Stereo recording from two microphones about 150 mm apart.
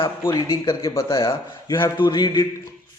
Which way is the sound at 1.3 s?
30° left (ahead or behind).